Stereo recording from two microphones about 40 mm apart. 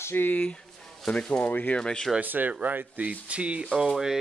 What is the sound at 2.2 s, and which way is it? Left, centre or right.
Speech, right.